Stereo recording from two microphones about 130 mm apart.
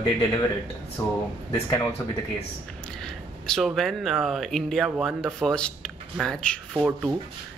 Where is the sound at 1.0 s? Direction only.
20° left (ahead or behind).